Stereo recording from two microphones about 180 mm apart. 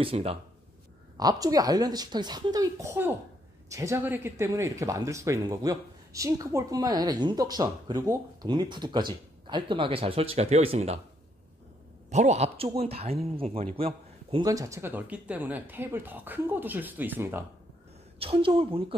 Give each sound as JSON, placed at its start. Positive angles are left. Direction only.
{"t": 0.0, "sound": "speech", "side_deg": -30}
{"t": 1.1, "sound": "speech", "side_deg": -20}
{"t": 12.1, "sound": "speech", "side_deg": -40}
{"t": 18.2, "sound": "speech", "side_deg": -30}